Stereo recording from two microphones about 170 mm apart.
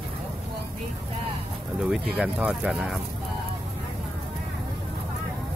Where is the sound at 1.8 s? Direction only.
5° right (ahead or behind).